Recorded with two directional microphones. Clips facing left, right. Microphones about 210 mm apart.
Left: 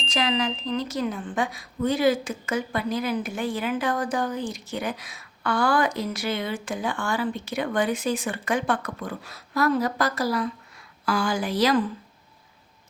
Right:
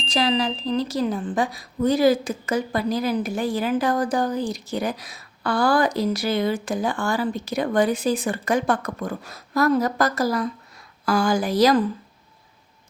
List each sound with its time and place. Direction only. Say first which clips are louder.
0.0 s speech: right 3 dB; 35° right (ahead or behind)